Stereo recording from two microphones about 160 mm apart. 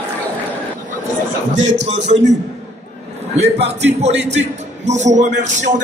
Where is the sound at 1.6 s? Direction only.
45° right (ahead or behind).